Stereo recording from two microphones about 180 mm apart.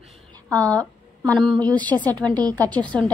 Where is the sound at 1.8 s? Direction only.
10° left (ahead or behind).